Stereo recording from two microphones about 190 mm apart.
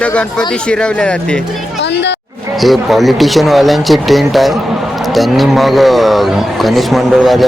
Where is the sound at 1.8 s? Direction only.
65° left (ahead or behind).